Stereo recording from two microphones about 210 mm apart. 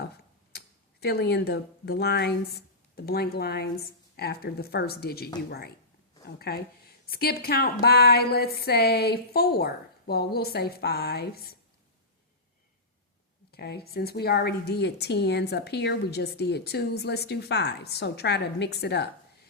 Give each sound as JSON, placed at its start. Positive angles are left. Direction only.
{"t": 0.0, "sound": "tick-tock", "side_deg": 50}
{"t": 2.9, "sound": "a woman's voice", "side_deg": 50}
{"t": 13.5, "sound": "a woman's voice", "side_deg": 50}